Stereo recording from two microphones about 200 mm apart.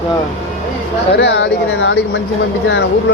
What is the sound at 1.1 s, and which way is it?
Speech, 60° left (ahead or behind).